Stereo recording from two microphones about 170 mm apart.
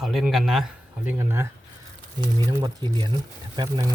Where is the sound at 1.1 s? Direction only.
15° right (ahead or behind).